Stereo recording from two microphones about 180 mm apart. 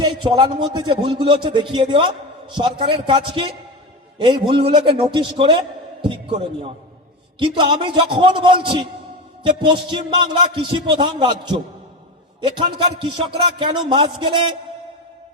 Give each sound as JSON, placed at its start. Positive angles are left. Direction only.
{"t": 0.0, "sound": "a man's voice", "side_deg": -25}